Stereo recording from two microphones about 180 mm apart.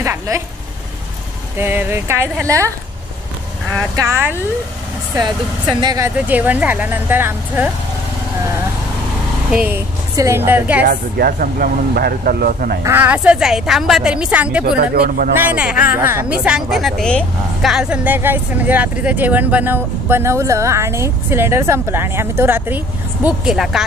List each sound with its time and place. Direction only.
0.0 s a sound: 15° right (ahead or behind)
1.6 s a woman's voice: 10° right (ahead or behind)
3.9 s a woman's voice: 15° right (ahead or behind)
5.8 s a woman's voice: 20° right (ahead or behind)
9.5 s a woman's voice: 5° right (ahead or behind)
10.8 s speech: 60° right (ahead or behind)
12.8 s a woman's voice: 10° right (ahead or behind)
14.8 s speech: 55° right (ahead or behind)
15.3 s a woman's voice: 10° right (ahead or behind)